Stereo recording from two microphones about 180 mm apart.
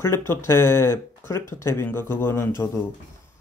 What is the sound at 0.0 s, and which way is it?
Speech, 15° left (ahead or behind).